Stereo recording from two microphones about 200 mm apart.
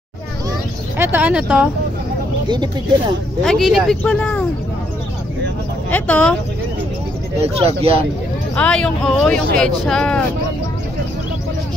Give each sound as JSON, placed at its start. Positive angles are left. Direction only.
{"t": 0.9, "sound": "speech", "side_deg": -10}
{"t": 2.4, "sound": "speech", "side_deg": -20}
{"t": 3.4, "sound": "speech", "side_deg": 0}
{"t": 5.9, "sound": "speech", "side_deg": 10}
{"t": 7.4, "sound": "speech", "side_deg": -30}
{"t": 8.5, "sound": "speech", "side_deg": 5}